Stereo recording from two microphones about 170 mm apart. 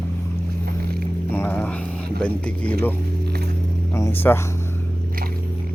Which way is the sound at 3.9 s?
15° left (ahead or behind).